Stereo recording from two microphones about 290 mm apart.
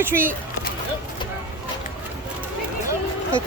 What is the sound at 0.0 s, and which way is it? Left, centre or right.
Speech, centre.